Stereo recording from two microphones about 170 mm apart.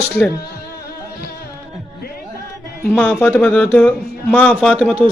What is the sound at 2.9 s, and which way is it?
A man's voice, 10° left (ahead or behind).